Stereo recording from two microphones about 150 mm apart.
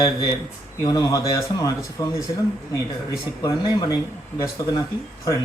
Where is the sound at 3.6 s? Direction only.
30° left (ahead or behind).